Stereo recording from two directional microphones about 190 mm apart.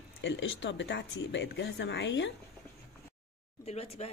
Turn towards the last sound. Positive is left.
turn(degrees=35)  # may be behind; listen again after turning